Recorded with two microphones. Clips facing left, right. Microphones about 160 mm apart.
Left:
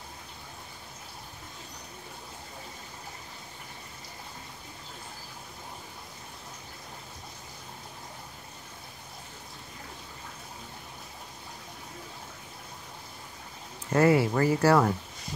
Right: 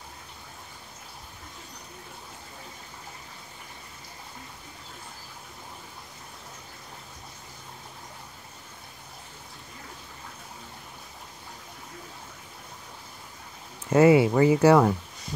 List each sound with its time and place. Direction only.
13.9 s speech: 20° right (ahead or behind)